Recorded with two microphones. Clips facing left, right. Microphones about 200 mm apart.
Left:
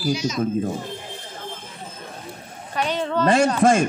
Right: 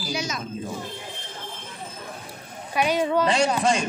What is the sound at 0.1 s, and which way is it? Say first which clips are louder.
Speech: left 4 dB; 55° right (ahead or behind).